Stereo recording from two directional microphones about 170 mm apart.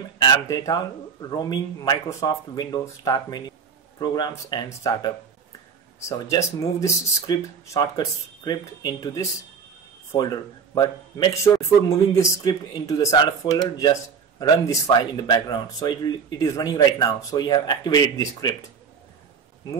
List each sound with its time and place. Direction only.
0.2 s speech: 20° left (ahead or behind)